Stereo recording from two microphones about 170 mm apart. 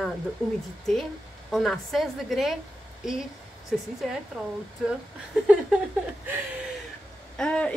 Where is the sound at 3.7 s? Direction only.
Centre (ahead or behind).